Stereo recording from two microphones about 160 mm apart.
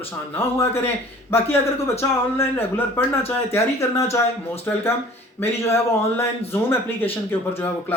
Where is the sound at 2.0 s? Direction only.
15° left (ahead or behind).